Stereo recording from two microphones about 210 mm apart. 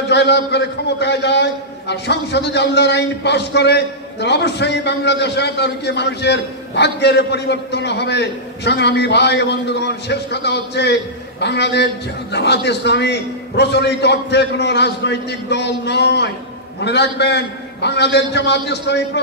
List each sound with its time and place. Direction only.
0.1 s a man's voice: 55° left (ahead or behind)